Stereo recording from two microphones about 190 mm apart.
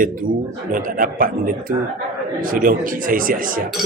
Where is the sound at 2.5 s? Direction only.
45° right (ahead or behind).